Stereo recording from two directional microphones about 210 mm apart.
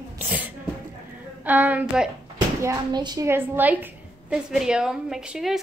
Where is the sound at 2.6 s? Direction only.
20° right (ahead or behind).